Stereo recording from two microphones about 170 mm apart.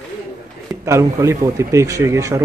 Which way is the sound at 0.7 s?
20° right (ahead or behind).